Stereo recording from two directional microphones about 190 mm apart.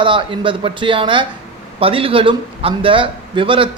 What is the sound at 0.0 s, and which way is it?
A man's voice, 25° right (ahead or behind).